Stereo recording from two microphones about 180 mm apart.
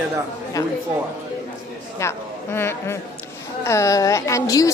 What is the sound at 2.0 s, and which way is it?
A woman's voice, 15° left (ahead or behind).